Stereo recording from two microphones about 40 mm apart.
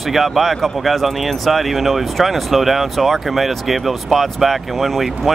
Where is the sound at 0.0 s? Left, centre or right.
Centre.